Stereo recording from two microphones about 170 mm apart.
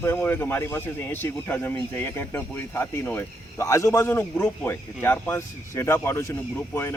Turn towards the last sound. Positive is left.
turn(degrees=15)  # may be behind; listen again after turning